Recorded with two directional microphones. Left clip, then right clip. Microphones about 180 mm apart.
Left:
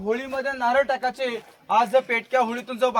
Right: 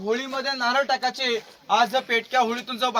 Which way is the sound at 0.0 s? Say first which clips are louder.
Even; 15° left (ahead or behind).